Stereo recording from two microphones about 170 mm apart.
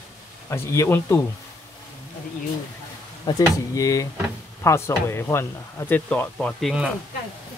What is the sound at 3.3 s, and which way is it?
Speech, 25° left (ahead or behind).